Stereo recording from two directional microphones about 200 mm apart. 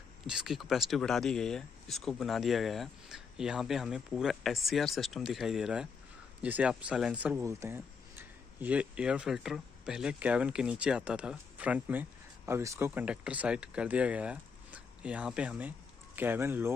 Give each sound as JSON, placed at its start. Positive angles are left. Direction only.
{"t": 0.3, "sound": "speech", "side_deg": -5}